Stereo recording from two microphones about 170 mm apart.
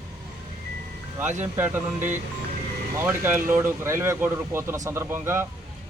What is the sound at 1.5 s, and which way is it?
A man's voice, 15° right (ahead or behind).